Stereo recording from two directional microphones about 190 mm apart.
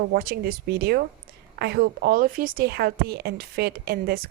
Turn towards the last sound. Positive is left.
turn(degrees=-55)  # may be behind; listen again after turning